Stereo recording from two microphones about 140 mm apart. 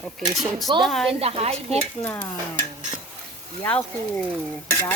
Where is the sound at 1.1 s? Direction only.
45° right (ahead or behind).